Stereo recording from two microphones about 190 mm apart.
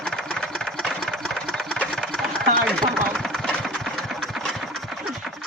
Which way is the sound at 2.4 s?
55° right (ahead or behind).